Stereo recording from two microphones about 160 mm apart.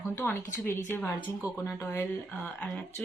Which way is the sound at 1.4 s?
25° left (ahead or behind).